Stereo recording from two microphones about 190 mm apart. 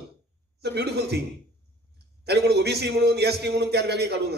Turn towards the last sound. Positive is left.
turn(degrees=-60)  # may be behind; listen again after turning